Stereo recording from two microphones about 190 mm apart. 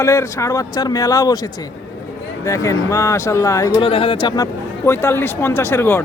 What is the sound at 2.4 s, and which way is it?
Speech, 15° left (ahead or behind).